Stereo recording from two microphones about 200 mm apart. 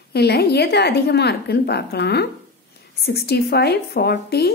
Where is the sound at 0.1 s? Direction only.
55° left (ahead or behind).